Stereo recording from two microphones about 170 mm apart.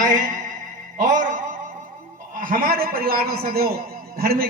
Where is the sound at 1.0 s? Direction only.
50° right (ahead or behind).